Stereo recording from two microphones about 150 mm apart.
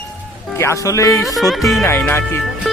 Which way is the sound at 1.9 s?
15° left (ahead or behind).